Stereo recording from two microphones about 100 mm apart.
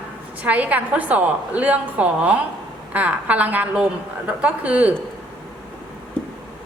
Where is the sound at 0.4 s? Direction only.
15° right (ahead or behind).